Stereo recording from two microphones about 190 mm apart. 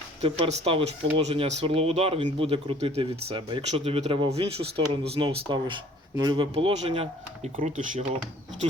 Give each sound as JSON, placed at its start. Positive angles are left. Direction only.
{"t": 0.2, "sound": "speech", "side_deg": -35}